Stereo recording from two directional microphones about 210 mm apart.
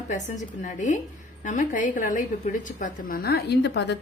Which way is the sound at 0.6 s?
35° left (ahead or behind).